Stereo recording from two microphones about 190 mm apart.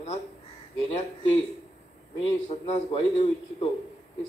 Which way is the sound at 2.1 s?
30° left (ahead or behind).